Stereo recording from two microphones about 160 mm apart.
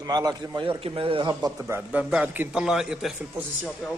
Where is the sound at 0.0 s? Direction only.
25° right (ahead or behind).